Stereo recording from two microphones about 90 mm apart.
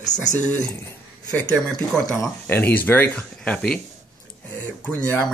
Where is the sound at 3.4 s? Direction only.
10° left (ahead or behind).